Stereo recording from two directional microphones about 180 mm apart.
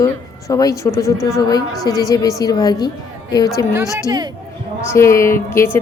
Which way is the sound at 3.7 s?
15° right (ahead or behind).